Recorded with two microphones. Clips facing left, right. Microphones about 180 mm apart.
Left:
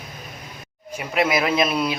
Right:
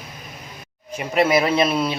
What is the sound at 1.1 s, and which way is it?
Speech, 35° right (ahead or behind).